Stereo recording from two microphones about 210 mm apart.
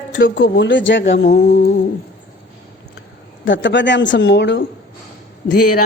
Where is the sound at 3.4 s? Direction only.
65° left (ahead or behind).